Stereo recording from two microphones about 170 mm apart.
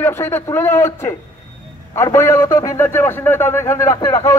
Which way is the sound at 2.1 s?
15° left (ahead or behind).